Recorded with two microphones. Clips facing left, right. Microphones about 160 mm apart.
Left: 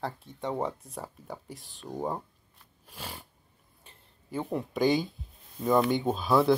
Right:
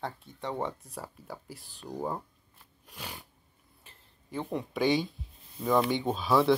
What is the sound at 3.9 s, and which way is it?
Speech, centre (ahead or behind).